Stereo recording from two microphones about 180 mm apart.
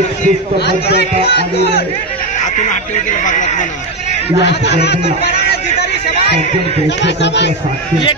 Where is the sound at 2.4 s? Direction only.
45° left (ahead or behind).